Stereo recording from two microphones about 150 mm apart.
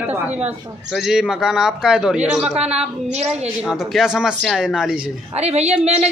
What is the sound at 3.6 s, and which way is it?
A man's voice, 5° right (ahead or behind).